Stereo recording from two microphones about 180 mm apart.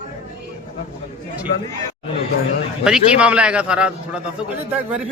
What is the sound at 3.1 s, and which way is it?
A man's voice, 5° right (ahead or behind).